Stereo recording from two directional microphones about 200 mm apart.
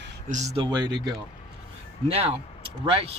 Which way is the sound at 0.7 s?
20° right (ahead or behind).